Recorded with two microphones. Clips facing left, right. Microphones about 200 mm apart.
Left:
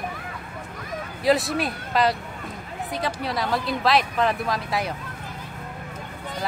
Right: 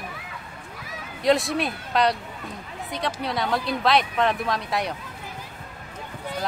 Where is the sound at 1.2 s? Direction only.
Centre (ahead or behind).